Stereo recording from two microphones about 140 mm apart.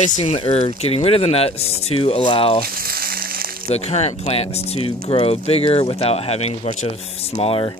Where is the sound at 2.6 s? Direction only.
90° right.